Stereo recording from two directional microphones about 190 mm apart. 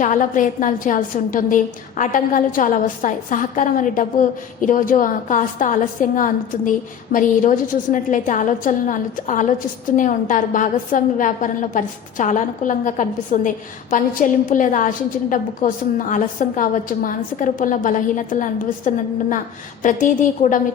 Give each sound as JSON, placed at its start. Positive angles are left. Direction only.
{"t": 0.0, "sound": "a woman's voice", "side_deg": 45}